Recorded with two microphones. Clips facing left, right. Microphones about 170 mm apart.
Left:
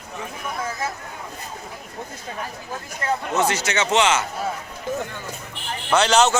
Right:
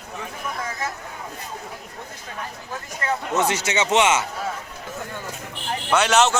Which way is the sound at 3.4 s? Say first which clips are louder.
Even; 20° right (ahead or behind).